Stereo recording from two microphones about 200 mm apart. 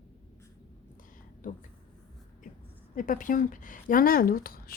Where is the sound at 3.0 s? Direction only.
40° left (ahead or behind).